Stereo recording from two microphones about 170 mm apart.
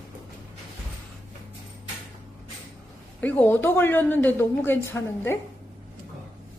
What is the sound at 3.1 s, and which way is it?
A woman's voice, 10° left (ahead or behind).